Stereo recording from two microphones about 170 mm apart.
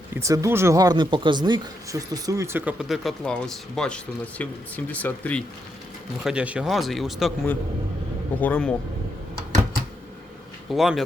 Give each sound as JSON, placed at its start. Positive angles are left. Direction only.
{"t": 0.1, "sound": "speech", "side_deg": -15}
{"t": 6.2, "sound": "a man's voice", "side_deg": -5}
{"t": 10.7, "sound": "a man's voice", "side_deg": 0}